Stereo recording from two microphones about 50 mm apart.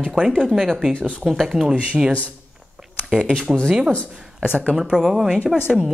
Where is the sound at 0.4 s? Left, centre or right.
Centre.